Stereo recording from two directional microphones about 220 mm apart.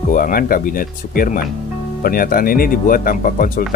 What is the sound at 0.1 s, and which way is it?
Speech, 40° left (ahead or behind).